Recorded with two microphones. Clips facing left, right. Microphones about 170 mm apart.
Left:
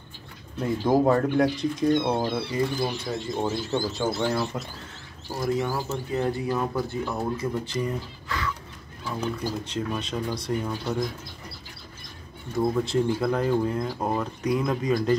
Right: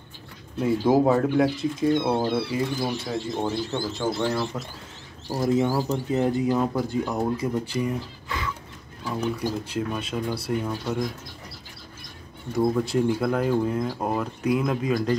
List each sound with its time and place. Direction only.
0.6 s speech: 5° right (ahead or behind)
5.4 s speech: 25° right (ahead or behind)
9.4 s speech: 10° right (ahead or behind)
12.7 s speech: 5° right (ahead or behind)